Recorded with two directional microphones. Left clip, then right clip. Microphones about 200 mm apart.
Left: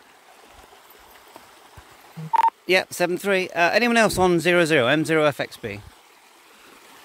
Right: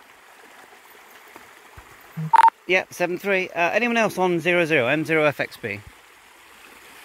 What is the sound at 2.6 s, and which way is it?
Speech, 20° left (ahead or behind).